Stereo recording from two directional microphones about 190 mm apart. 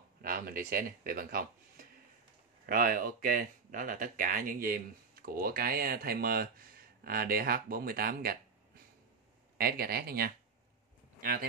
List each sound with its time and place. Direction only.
0.2 s speech: 50° right (ahead or behind)